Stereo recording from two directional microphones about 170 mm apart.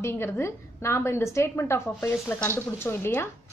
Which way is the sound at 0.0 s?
15° left (ahead or behind).